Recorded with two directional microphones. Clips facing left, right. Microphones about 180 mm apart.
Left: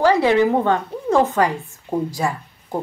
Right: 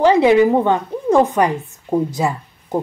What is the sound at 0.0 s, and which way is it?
A woman's voice, 20° right (ahead or behind).